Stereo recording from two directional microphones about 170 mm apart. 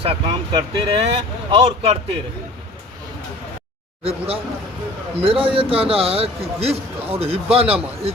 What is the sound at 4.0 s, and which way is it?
A man's voice, 35° right (ahead or behind).